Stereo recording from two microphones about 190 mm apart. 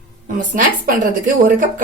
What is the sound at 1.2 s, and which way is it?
Speech, 45° right (ahead or behind).